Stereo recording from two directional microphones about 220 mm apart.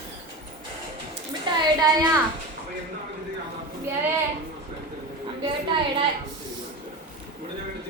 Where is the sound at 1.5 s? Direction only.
20° right (ahead or behind).